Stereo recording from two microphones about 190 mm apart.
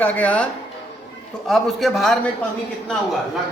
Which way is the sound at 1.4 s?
Centre (ahead or behind).